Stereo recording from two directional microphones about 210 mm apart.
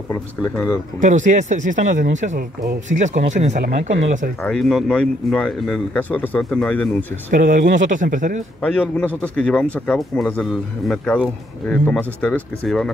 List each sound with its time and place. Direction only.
1.0 s speech: 35° right (ahead or behind)
4.4 s speech: centre (ahead or behind)
7.2 s speech: 40° right (ahead or behind)
8.5 s speech: 5° left (ahead or behind)